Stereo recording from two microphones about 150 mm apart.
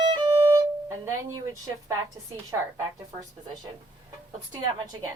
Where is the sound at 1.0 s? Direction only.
20° right (ahead or behind).